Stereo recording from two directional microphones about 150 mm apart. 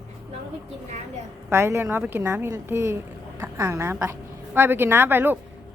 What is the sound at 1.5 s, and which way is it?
A woman's voice, 20° right (ahead or behind).